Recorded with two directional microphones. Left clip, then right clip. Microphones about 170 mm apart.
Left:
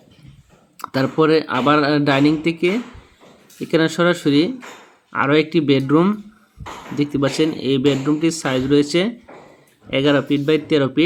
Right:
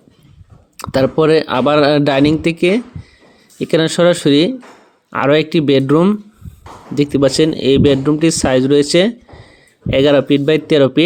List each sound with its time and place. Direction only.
0.8 s speech: 35° right (ahead or behind)